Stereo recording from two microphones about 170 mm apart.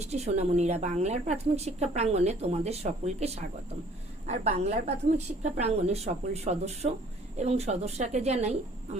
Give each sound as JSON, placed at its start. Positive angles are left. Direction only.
{"t": 0.0, "sound": "a woman's voice", "side_deg": -40}